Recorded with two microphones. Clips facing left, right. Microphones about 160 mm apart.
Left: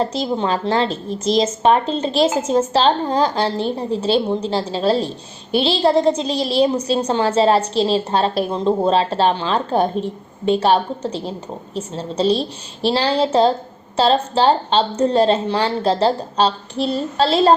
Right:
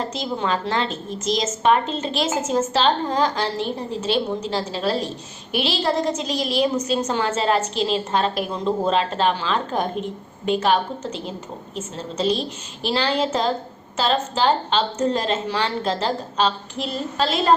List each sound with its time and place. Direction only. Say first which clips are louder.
0.0 s a woman's voice: left 5 dB; 30° left (ahead or behind)